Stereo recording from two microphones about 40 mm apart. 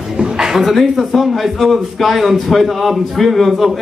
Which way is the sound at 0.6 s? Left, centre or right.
Centre.